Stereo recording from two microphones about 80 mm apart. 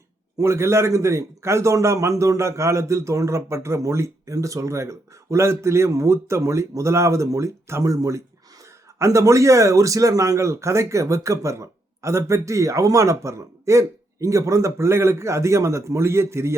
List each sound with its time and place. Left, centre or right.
0.3 s a man's voice: right